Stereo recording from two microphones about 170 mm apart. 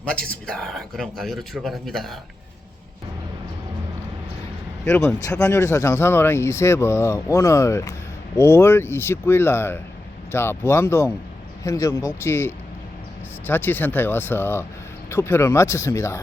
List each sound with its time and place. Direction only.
0.0 s speech: 5° left (ahead or behind)
4.9 s speech: 15° left (ahead or behind)